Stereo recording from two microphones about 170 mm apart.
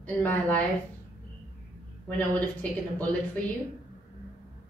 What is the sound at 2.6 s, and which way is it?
Speech, 10° left (ahead or behind).